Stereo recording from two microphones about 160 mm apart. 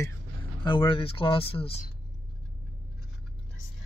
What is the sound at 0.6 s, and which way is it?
Speech, 30° left (ahead or behind).